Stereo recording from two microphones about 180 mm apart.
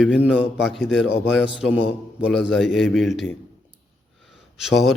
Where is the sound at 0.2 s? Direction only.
5° right (ahead or behind).